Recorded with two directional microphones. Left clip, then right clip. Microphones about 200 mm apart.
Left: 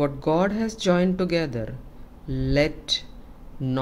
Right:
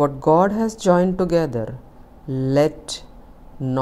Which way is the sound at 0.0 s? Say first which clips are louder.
Right 7 dB; 15° right (ahead or behind).